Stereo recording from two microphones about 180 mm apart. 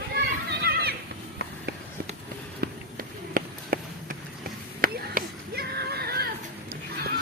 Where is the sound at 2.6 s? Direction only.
60° right (ahead or behind).